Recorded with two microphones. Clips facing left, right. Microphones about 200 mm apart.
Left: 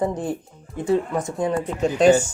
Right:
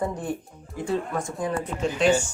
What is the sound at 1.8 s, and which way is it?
Speech, 40° left (ahead or behind).